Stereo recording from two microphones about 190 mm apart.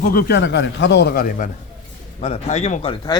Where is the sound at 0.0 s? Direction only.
50° left (ahead or behind).